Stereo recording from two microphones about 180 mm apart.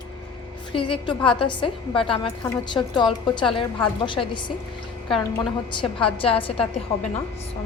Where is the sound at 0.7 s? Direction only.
30° left (ahead or behind).